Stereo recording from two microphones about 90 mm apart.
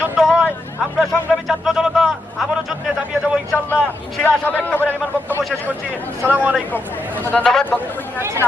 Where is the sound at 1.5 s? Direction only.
5° right (ahead or behind).